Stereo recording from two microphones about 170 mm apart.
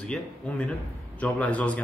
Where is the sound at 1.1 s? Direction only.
10° left (ahead or behind).